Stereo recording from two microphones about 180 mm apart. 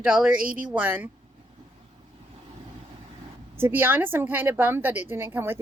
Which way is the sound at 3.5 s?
10° right (ahead or behind).